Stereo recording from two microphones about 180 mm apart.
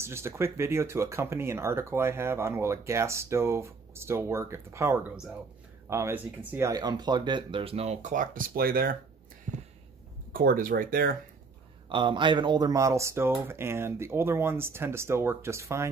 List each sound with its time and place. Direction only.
0.0 s speech: 15° right (ahead or behind); by 8.9 s 55° right (ahead or behind)
10.3 s speech: 50° right (ahead or behind)
11.9 s speech: 25° right (ahead or behind)